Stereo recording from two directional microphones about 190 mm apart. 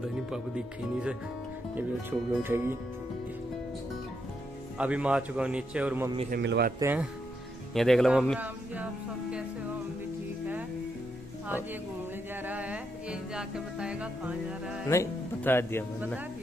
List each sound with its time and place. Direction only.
0.3 s music: 5° right (ahead or behind)
1.8 s a man's voice: 10° right (ahead or behind)
4.7 s a man's voice: 5° right (ahead or behind)
6.3 s speech: 55° right (ahead or behind)
6.8 s a man's voice: 10° right (ahead or behind)
7.7 s music: centre (ahead or behind)
12.4 s music: 10° right (ahead or behind)
14.9 s speech: 15° left (ahead or behind)